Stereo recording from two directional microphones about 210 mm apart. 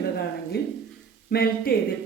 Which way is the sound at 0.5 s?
45° left (ahead or behind).